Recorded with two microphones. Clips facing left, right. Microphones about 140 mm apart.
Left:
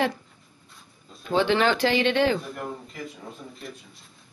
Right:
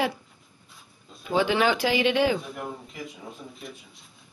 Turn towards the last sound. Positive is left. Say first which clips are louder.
# left 1 dB
turn(degrees=0)  # may be behind; listen again after turning